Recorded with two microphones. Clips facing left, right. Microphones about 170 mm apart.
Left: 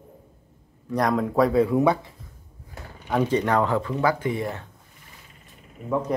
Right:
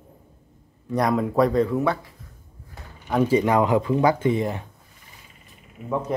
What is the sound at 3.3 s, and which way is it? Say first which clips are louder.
Speech: right 4 dB; 10° right (ahead or behind).